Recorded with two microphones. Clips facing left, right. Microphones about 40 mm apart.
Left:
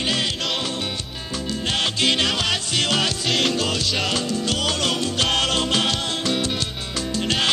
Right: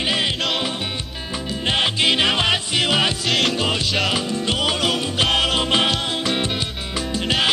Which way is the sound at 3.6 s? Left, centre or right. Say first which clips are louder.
Right 2 dB; right.